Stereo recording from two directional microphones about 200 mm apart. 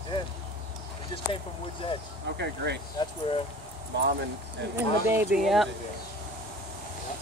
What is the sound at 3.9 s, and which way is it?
Speech, 55° right (ahead or behind).